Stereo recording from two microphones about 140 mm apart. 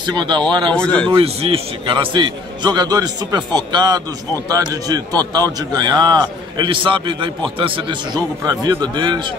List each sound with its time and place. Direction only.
0.0 s a man's voice: 35° right (ahead or behind)
0.7 s speech: 5° left (ahead or behind)
1.1 s a man's voice: 45° right (ahead or behind)